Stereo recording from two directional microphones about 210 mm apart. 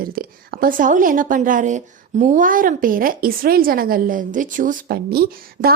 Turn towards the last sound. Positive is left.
turn(degrees=-45)  # may be behind; listen again after turning